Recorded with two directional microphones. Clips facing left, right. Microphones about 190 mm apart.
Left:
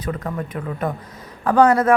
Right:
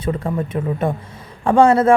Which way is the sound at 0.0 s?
25° right (ahead or behind).